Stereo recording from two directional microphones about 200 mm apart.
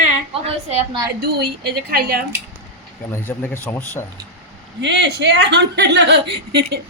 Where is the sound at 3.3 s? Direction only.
10° left (ahead or behind).